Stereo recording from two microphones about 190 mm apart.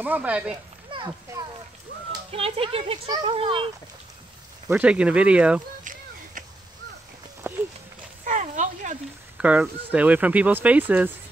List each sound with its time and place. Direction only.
0.0 s speech: 10° right (ahead or behind)
0.8 s a sound: 25° right (ahead or behind)
2.3 s speech: 30° right (ahead or behind)
4.6 s speech: 5° right (ahead or behind)
7.5 s horse: 10° right (ahead or behind)
8.3 s a sound: 40° right (ahead or behind)
9.4 s speech: 5° right (ahead or behind)